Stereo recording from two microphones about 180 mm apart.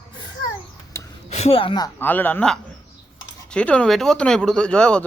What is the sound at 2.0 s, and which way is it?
Speech, 10° left (ahead or behind).